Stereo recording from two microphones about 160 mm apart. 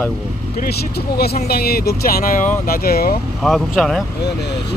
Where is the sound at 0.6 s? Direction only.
80° left.